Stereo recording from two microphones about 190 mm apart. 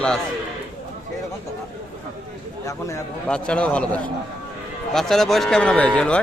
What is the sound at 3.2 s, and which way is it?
A man's voice, 5° left (ahead or behind).